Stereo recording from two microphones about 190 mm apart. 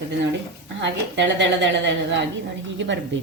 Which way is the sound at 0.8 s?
70° right (ahead or behind).